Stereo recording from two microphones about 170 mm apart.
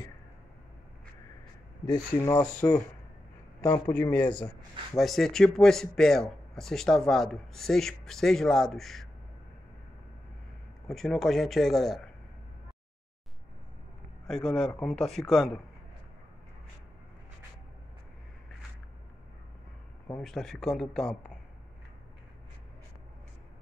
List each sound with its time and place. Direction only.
1.9 s speech: 25° left (ahead or behind)
2.6 s speech: 10° left (ahead or behind)
4.1 s speech: 10° left (ahead or behind)
10.9 s speech: centre (ahead or behind)
14.2 s speech: 5° left (ahead or behind)
20.2 s speech: centre (ahead or behind)